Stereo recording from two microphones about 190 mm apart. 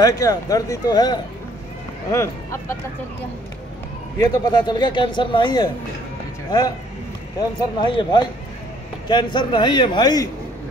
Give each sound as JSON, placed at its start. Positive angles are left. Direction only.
{"t": 0.0, "sound": "a man's voice", "side_deg": 20}
{"t": 4.2, "sound": "a man's voice", "side_deg": 20}
{"t": 7.3, "sound": "a man's voice", "side_deg": 25}